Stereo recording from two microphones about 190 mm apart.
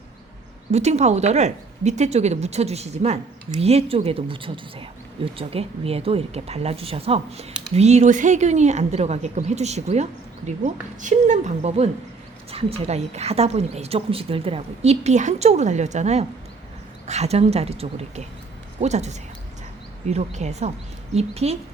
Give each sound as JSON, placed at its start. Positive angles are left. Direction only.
{"t": 0.7, "sound": "a woman's voice", "side_deg": -35}